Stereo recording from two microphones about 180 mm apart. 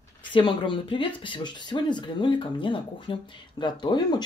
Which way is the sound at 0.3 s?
30° left (ahead or behind).